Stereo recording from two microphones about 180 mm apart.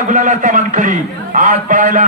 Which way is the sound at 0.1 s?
45° right (ahead or behind).